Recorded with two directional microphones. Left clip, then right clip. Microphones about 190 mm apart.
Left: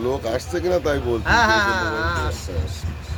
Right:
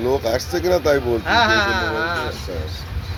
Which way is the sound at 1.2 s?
55° left (ahead or behind).